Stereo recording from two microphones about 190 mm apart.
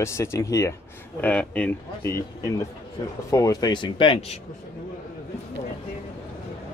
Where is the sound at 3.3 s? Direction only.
15° left (ahead or behind).